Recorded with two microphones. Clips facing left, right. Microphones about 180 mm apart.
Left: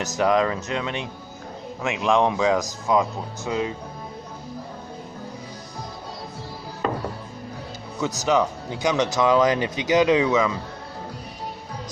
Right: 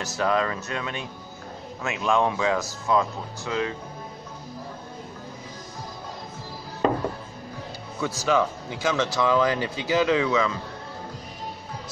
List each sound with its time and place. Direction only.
0.2 s speech: 15° left (ahead or behind)
8.0 s speech: 20° left (ahead or behind)